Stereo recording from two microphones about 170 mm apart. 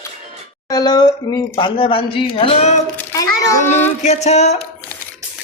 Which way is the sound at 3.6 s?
40° left (ahead or behind).